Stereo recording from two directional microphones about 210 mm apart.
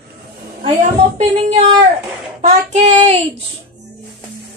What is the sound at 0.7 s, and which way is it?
Speech, 30° right (ahead or behind).